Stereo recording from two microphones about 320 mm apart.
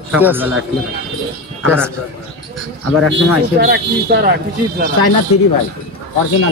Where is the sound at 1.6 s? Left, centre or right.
Centre.